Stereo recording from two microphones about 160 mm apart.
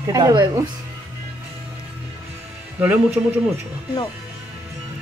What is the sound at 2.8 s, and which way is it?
Speech, 10° right (ahead or behind).